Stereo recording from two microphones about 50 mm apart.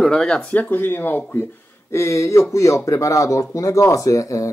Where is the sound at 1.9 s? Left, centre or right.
Left.